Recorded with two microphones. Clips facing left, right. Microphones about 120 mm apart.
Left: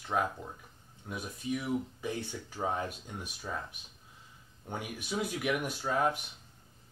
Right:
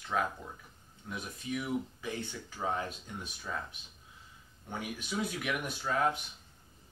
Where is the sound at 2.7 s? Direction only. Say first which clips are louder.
Even; 10° left (ahead or behind).